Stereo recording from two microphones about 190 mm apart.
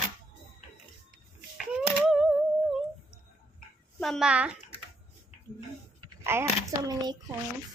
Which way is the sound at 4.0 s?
Centre (ahead or behind).